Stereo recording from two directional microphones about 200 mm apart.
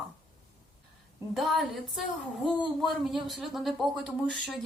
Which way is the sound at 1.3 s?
Centre (ahead or behind).